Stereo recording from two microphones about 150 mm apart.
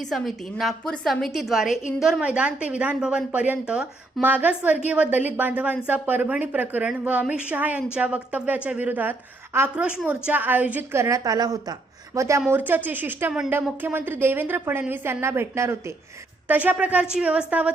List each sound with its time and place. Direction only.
0.0 s a woman's voice: centre (ahead or behind)